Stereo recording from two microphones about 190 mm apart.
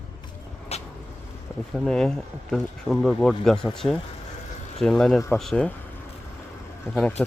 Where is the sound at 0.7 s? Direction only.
35° left (ahead or behind).